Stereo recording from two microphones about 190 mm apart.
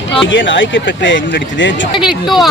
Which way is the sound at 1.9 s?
Centre (ahead or behind).